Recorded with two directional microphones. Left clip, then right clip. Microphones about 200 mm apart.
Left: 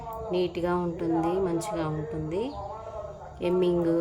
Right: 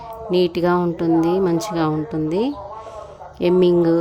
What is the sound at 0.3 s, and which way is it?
A woman's voice, 55° right (ahead or behind).